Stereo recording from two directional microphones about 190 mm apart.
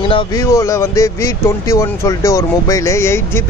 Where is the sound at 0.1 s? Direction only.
25° left (ahead or behind).